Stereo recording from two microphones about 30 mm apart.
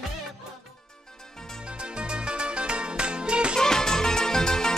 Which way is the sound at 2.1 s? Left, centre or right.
Right.